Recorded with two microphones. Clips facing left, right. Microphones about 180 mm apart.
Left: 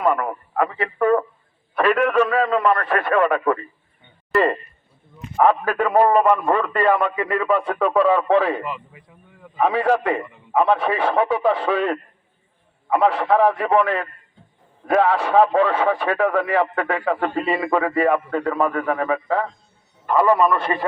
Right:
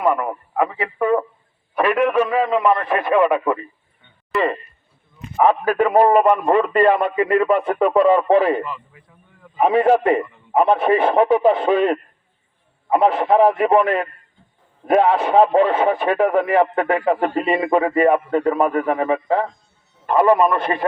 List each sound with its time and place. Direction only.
0.0 s a man's voice: 10° right (ahead or behind)
4.3 s a sound: centre (ahead or behind)
5.4 s a man's voice: 15° right (ahead or behind)
8.6 s speech: 15° left (ahead or behind)
9.6 s speech: 20° right (ahead or behind)